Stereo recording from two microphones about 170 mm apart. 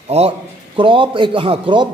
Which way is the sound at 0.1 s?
40° right (ahead or behind).